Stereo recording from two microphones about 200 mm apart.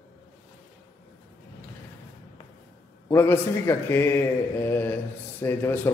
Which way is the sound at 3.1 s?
10° left (ahead or behind).